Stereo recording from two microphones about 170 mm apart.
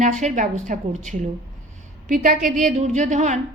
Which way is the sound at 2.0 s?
50° right (ahead or behind).